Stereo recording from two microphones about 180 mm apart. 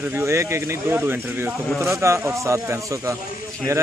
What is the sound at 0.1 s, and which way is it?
A man's voice, 15° right (ahead or behind).